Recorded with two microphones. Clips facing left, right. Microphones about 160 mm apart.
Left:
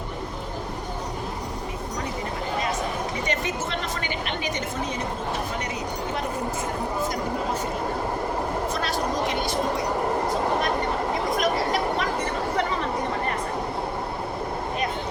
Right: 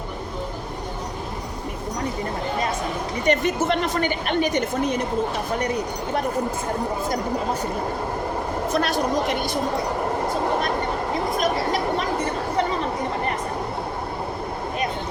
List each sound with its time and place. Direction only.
3.2 s a woman's voice: 60° right (ahead or behind)
8.7 s speech: 65° right (ahead or behind)